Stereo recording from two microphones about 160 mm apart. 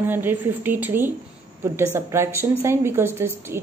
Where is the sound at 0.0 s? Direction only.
15° right (ahead or behind).